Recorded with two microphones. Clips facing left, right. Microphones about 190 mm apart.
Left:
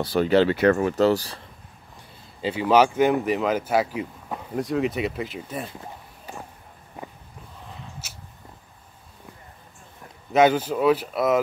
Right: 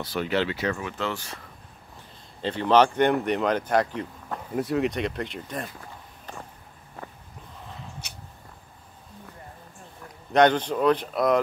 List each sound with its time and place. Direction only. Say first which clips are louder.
0.0 s speech: left 7 dB; 35° left (ahead or behind)
0.6 s speech: left 10 dB; 55° left (ahead or behind)
0.8 s speech: left 11 dB; 40° left (ahead or behind)
2.4 s speech: left 1 dB; 5° left (ahead or behind)
6.3 s a sound: left 2 dB; 10° left (ahead or behind)
10.3 s speech: left 1 dB; 5° left (ahead or behind)